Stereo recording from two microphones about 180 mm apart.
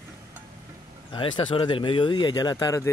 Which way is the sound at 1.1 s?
25° left (ahead or behind).